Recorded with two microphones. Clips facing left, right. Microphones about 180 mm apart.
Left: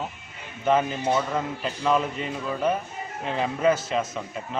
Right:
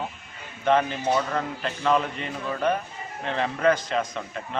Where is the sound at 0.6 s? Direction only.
5° left (ahead or behind).